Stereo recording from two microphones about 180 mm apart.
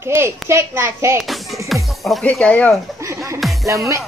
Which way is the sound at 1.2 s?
Centre (ahead or behind).